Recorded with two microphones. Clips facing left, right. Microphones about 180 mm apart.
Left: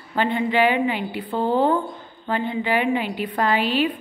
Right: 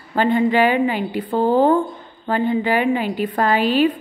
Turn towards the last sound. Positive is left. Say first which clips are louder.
# right 4 dB
turn(degrees=-45)  # may be behind; listen again after turning